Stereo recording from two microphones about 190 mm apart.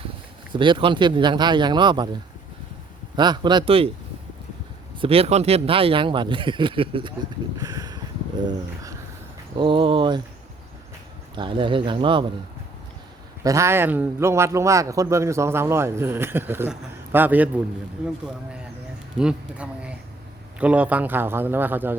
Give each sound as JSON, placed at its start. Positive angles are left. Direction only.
{"t": 0.5, "sound": "speech", "side_deg": -25}
{"t": 3.2, "sound": "speech", "side_deg": -25}
{"t": 4.9, "sound": "speech", "side_deg": -30}
{"t": 7.6, "sound": "a sound", "side_deg": -20}
{"t": 9.6, "sound": "speech", "side_deg": -25}
{"t": 11.3, "sound": "speech", "side_deg": -25}
{"t": 13.4, "sound": "a man's voice", "side_deg": -15}
{"t": 19.1, "sound": "a man's voice", "side_deg": -5}